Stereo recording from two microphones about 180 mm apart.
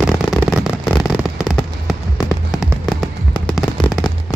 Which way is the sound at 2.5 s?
Centre (ahead or behind).